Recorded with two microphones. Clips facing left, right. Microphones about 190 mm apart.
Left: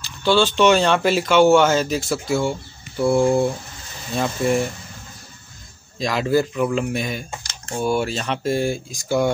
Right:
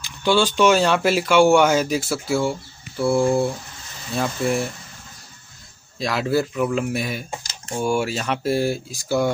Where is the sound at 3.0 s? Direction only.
15° left (ahead or behind).